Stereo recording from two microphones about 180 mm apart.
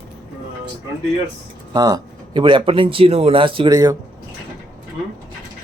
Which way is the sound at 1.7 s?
20° right (ahead or behind).